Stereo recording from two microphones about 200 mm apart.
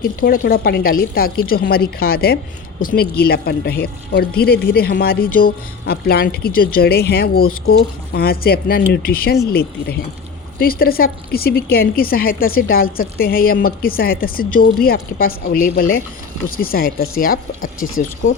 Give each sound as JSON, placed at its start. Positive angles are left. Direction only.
{"t": 0.0, "sound": "a woman's voice", "side_deg": 45}
{"t": 17.8, "sound": "speech", "side_deg": 90}